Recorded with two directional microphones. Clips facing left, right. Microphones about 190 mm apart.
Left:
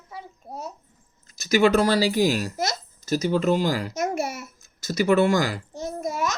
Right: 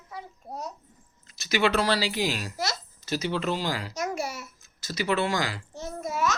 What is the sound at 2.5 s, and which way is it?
Speech, 20° left (ahead or behind).